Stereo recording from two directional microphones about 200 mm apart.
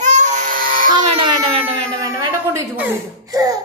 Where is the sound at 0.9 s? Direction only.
25° right (ahead or behind).